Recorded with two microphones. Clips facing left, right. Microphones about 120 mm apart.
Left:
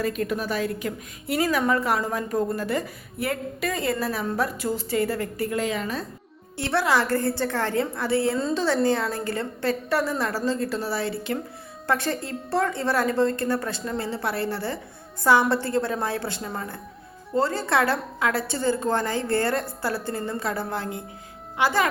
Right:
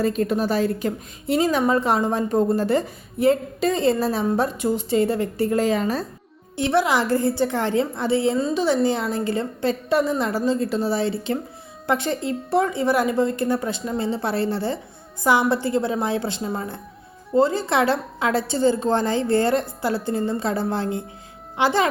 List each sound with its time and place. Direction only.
0.0 s a woman's voice: 30° right (ahead or behind)
5.5 s a woman's voice: 35° right (ahead or behind)
6.6 s a woman's voice: 15° right (ahead or behind)